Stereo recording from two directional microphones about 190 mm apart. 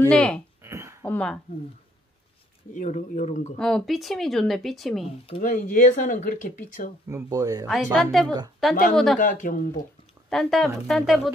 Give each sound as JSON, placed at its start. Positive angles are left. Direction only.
{"t": 0.0, "sound": "speech", "side_deg": 5}
{"t": 0.6, "sound": "a sound", "side_deg": -15}
{"t": 1.0, "sound": "speech", "side_deg": 5}
{"t": 2.7, "sound": "speech", "side_deg": 40}
{"t": 3.5, "sound": "speech", "side_deg": 5}
{"t": 5.4, "sound": "speech", "side_deg": 40}
{"t": 7.1, "sound": "speech", "side_deg": -15}
{"t": 7.6, "sound": "a woman's voice", "side_deg": 0}
{"t": 9.2, "sound": "speech", "side_deg": 45}
{"t": 10.3, "sound": "speech", "side_deg": 0}